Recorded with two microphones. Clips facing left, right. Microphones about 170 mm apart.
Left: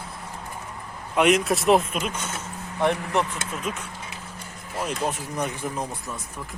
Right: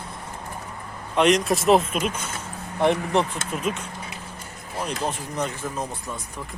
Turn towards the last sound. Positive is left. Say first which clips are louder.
# even
turn(degrees=15)  # may be behind; listen again after turning